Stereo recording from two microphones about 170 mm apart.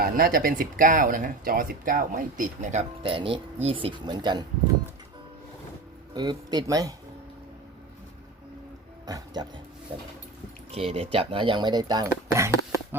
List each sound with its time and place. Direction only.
0.0 s speech: 60° right (ahead or behind)
3.0 s speech: 30° right (ahead or behind)
6.1 s speech: 25° right (ahead or behind)
9.0 s speech: 25° right (ahead or behind)
10.7 s speech: 35° right (ahead or behind); by 13.0 s 15° right (ahead or behind)